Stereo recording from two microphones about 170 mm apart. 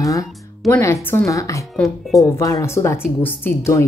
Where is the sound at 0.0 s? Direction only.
20° left (ahead or behind).